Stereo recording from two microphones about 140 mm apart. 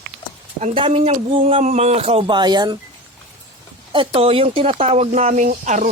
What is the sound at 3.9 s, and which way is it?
Speech, 35° right (ahead or behind).